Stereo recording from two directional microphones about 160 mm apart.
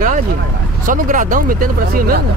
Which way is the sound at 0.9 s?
55° right (ahead or behind).